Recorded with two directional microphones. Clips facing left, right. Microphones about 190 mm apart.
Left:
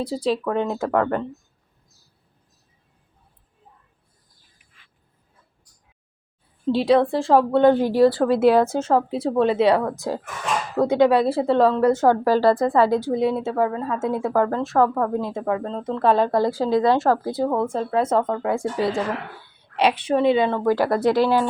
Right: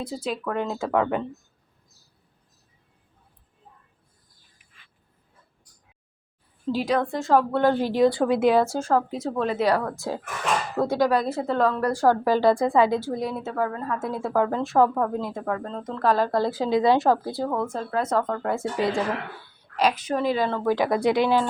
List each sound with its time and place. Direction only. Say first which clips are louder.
0.0 s a woman's voice: left 6 dB; 30° left (ahead or behind)
0.9 s speech: even; centre (ahead or behind)
6.7 s a woman's voice: left 7 dB; 30° left (ahead or behind); by 7.9 s 15° left (ahead or behind)
8.0 s speech: left 3 dB; centre (ahead or behind)
8.7 s a woman's voice: left 3 dB; 25° left (ahead or behind)
12.4 s speech: left 2 dB; centre (ahead or behind)
12.8 s a woman's voice: left 4 dB; 15° left (ahead or behind)
14.4 s speech: left 1 dB; centre (ahead or behind)
15.2 s a woman's voice: left 4 dB; 20° left (ahead or behind)
16.7 s speech: even; centre (ahead or behind)
17.3 s a woman's voice: left 5 dB; 25° left (ahead or behind)
18.3 s a woman's voice: left 3 dB; 15° left (ahead or behind)
19.7 s a woman's voice: left 4 dB; 30° left (ahead or behind); by 21.4 s 5° left (ahead or behind)